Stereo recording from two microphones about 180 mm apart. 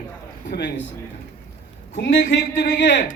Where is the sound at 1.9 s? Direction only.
65° left (ahead or behind).